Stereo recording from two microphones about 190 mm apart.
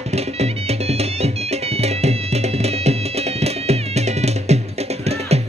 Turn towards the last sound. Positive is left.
turn(degrees=-35)  # may be behind; listen again after turning